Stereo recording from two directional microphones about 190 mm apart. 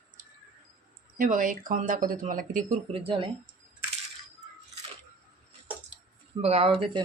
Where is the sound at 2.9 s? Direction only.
30° right (ahead or behind).